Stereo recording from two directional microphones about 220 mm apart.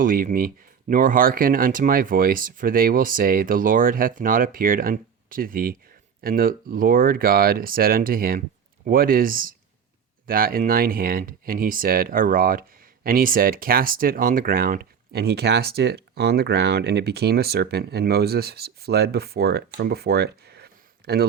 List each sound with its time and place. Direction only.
0.0 s speech: 40° right (ahead or behind)